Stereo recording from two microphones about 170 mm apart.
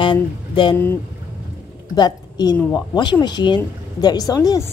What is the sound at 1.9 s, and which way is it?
A woman's voice, 25° left (ahead or behind).